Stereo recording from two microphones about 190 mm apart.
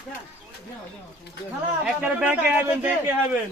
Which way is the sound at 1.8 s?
5° right (ahead or behind).